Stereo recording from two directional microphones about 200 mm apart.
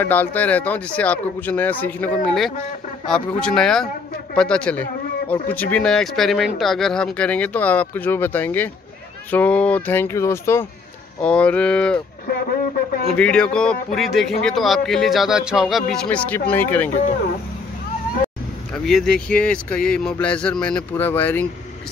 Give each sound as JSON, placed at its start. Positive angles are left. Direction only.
{"t": 0.0, "sound": "speech", "side_deg": 10}
{"t": 12.3, "sound": "speech", "side_deg": 50}
{"t": 13.1, "sound": "speech", "side_deg": 5}
{"t": 18.9, "sound": "speech", "side_deg": 0}